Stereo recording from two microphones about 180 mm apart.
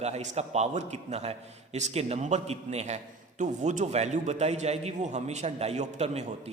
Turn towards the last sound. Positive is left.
turn(degrees=-35)  # may be behind; listen again after turning